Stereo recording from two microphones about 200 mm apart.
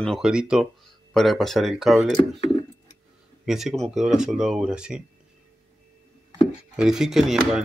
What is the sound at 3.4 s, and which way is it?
Speech, centre (ahead or behind).